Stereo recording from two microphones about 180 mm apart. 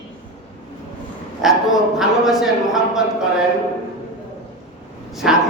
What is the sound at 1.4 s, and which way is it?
A man's voice, centre (ahead or behind).